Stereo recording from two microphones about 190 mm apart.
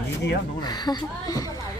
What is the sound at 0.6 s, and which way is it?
Speech, 20° left (ahead or behind).